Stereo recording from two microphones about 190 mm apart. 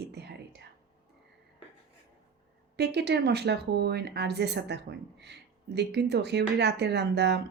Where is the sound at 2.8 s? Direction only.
60° right (ahead or behind).